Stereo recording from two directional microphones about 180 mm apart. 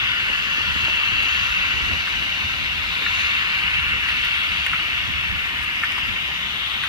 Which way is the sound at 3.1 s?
25° right (ahead or behind).